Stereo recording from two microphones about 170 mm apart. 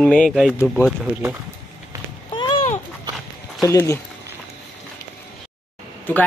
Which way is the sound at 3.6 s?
15° left (ahead or behind).